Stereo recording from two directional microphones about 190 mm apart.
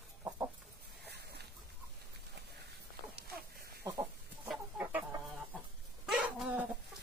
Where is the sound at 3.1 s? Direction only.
50° right (ahead or behind).